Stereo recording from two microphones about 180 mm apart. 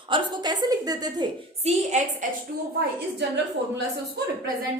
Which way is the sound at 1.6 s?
40° right (ahead or behind).